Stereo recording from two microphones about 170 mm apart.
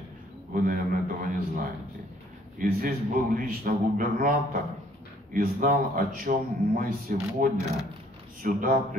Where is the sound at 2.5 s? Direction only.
55° right (ahead or behind).